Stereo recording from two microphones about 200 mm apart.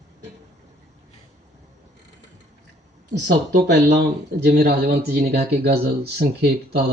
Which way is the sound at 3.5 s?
55° right (ahead or behind).